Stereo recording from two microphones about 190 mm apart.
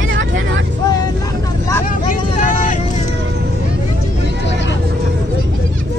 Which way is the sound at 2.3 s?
40° left (ahead or behind).